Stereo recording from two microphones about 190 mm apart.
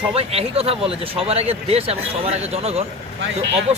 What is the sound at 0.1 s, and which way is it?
Speech, 30° right (ahead or behind).